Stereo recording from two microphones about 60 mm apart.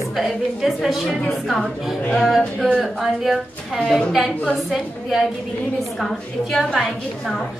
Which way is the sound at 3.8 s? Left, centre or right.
Centre.